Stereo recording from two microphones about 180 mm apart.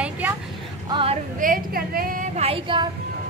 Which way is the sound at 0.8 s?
30° right (ahead or behind).